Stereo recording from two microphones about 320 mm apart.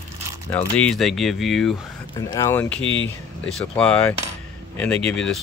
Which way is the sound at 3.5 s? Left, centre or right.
Centre.